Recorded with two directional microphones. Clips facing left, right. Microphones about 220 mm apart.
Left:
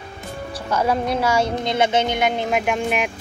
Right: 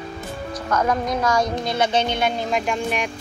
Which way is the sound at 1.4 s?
25° left (ahead or behind).